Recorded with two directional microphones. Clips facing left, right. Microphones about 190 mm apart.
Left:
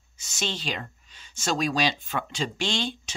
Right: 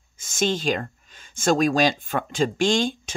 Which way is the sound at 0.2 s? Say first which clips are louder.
Right 9 dB; 50° right (ahead or behind).